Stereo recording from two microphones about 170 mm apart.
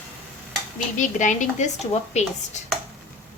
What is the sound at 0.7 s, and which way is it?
A woman's voice, 45° left (ahead or behind).